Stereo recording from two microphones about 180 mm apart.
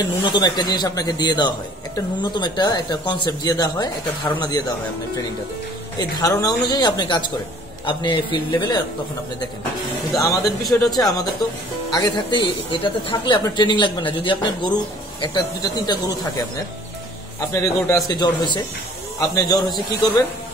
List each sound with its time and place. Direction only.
0.0 s speech: 25° left (ahead or behind)
5.9 s speech: 20° left (ahead or behind)
10.1 s speech: 15° left (ahead or behind)
17.6 s speech: 20° left (ahead or behind)